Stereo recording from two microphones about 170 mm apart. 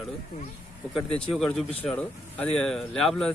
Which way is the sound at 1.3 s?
Centre (ahead or behind).